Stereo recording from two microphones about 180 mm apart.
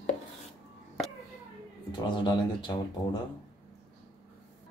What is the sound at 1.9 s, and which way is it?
Speech, 25° left (ahead or behind).